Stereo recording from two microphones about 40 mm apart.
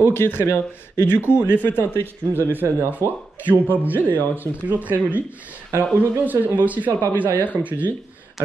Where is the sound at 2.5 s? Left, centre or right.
Right.